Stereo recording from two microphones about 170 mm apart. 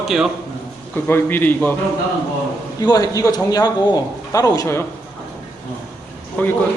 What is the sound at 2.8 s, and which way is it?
Speech, 25° left (ahead or behind).